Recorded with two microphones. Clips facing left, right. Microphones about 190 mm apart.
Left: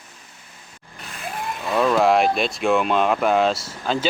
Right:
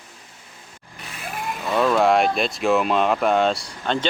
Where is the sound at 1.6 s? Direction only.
Centre (ahead or behind).